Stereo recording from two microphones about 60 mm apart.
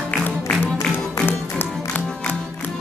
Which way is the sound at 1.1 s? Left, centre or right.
Left.